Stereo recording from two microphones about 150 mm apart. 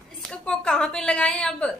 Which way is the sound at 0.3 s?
5° left (ahead or behind).